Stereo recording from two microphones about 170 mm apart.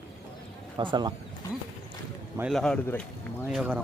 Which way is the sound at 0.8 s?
25° right (ahead or behind).